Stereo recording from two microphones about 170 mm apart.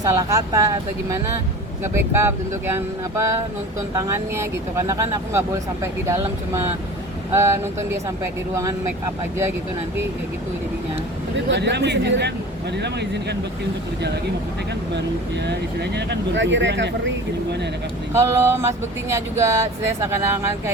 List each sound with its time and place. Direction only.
0.0 s speech: 20° right (ahead or behind)
11.3 s speech: 90° right
15.4 s speech: 80° right
18.1 s speech: 15° right (ahead or behind)